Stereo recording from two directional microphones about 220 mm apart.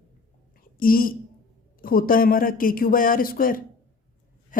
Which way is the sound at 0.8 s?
40° left (ahead or behind).